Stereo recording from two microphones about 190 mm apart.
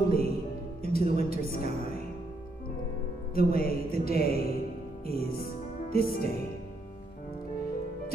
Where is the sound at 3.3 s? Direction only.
50° left (ahead or behind).